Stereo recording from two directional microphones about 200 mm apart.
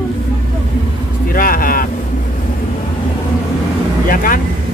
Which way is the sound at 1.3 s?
45° left (ahead or behind).